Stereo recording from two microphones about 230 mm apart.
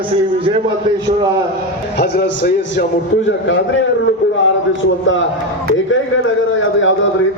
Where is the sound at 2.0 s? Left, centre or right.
Left.